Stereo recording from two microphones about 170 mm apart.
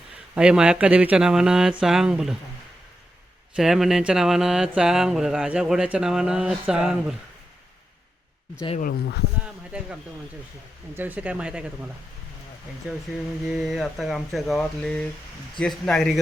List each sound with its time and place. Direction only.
0.3 s speech: 5° right (ahead or behind)
3.5 s speech: centre (ahead or behind)
8.8 s speech: 70° left (ahead or behind)
9.4 s a sound: 5° right (ahead or behind)
10.9 s speech: 10° right (ahead or behind)
13.5 s speech: centre (ahead or behind)